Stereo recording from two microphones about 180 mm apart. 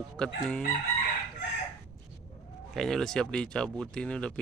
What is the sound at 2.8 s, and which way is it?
Speech, centre (ahead or behind).